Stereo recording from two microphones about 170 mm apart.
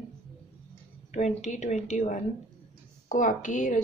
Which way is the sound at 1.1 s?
45° left (ahead or behind).